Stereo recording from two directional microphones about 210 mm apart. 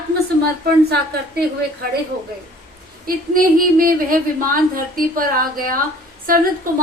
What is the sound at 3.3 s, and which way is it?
A woman's voice, 40° right (ahead or behind).